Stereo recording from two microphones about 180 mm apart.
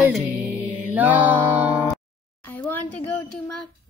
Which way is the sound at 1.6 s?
15° left (ahead or behind).